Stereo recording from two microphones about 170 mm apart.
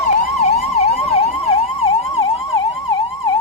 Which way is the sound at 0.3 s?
40° left (ahead or behind).